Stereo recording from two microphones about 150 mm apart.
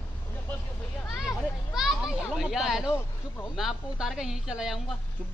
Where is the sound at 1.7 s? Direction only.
5° right (ahead or behind).